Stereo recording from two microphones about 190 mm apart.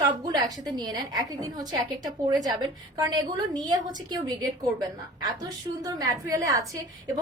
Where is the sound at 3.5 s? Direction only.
20° right (ahead or behind).